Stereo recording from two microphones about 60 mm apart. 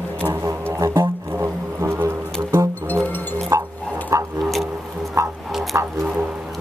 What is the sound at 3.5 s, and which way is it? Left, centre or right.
Dog, right.